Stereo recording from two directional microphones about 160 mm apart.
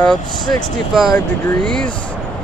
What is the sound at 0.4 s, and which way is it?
Speech, 25° left (ahead or behind).